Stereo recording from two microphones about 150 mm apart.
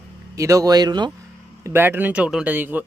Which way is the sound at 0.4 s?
20° right (ahead or behind).